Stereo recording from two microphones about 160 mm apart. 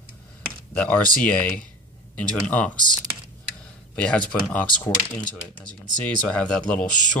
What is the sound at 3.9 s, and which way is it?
Speech, 5° left (ahead or behind).